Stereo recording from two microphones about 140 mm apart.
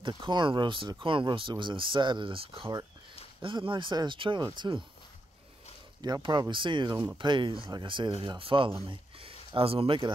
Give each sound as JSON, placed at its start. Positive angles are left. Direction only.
{"t": 0.0, "sound": "speech", "side_deg": -35}
{"t": 6.0, "sound": "speech", "side_deg": -30}